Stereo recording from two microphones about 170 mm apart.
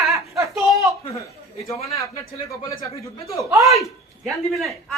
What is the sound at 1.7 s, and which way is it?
Speech, 20° left (ahead or behind).